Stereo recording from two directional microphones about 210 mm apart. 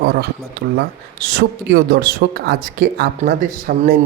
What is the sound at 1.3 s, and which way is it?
Speech, 50° right (ahead or behind).